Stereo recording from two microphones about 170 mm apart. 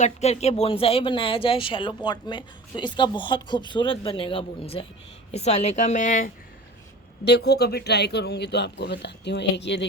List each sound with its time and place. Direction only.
0.0 s speech: 40° left (ahead or behind)
7.3 s speech: 75° left (ahead or behind)